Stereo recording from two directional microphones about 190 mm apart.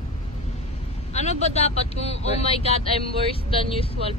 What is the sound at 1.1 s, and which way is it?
Speech, 35° left (ahead or behind).